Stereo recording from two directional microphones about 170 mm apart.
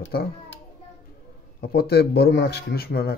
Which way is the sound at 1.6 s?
65° left (ahead or behind).